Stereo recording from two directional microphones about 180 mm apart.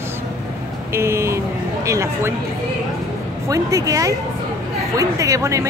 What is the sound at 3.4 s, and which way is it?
Speech, 20° right (ahead or behind).